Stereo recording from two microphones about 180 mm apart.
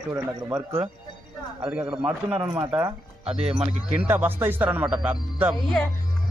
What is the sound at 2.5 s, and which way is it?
Speech, 20° right (ahead or behind).